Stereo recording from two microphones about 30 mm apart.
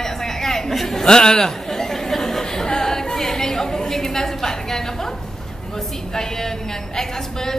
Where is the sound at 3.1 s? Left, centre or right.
Centre.